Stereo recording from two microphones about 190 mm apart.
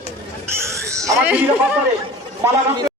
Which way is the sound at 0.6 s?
15° right (ahead or behind).